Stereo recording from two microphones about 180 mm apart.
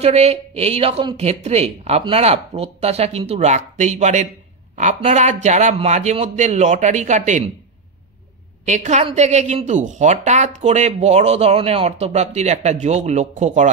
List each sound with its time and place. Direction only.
0.0 s a woman's voice: 35° right (ahead or behind)
8.6 s a woman's voice: 40° right (ahead or behind)